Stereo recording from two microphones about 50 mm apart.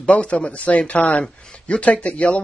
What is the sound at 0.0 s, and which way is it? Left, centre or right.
Speech, left.